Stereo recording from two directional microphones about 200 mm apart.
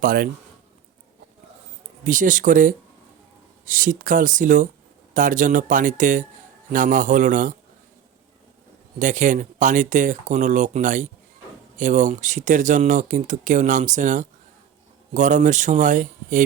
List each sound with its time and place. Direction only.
0.0 s speech: 45° right (ahead or behind)
2.0 s speech: 40° right (ahead or behind)
9.0 s speech: 40° right (ahead or behind)